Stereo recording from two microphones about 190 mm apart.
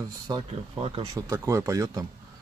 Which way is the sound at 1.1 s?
15° right (ahead or behind).